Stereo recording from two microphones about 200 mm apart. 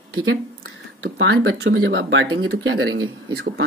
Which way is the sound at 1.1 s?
80° right.